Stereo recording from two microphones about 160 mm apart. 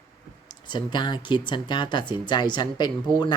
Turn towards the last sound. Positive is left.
turn(degrees=30)  # may be behind; listen again after turning